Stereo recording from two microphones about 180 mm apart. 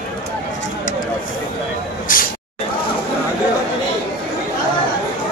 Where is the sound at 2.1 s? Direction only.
50° left (ahead or behind).